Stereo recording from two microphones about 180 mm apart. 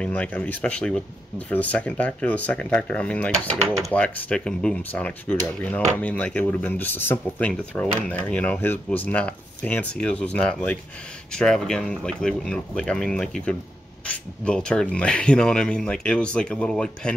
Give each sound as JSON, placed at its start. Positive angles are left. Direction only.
{"t": 0.0, "sound": "speech", "side_deg": 5}